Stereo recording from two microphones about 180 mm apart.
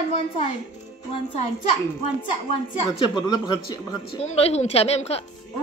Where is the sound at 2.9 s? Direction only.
25° left (ahead or behind).